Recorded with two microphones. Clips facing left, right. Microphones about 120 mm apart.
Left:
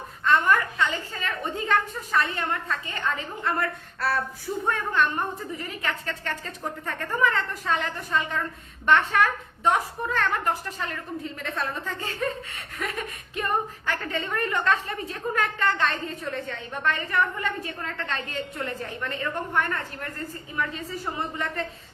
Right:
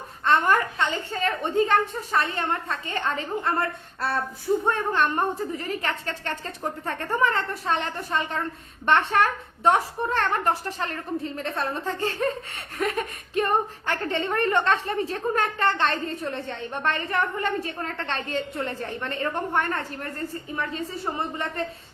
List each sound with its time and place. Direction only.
0.3 s a woman's voice: 30° right (ahead or behind)
9.6 s a woman's voice: 30° right (ahead or behind)